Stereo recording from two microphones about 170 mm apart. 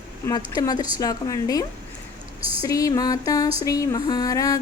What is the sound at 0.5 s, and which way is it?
A woman's voice, 25° left (ahead or behind).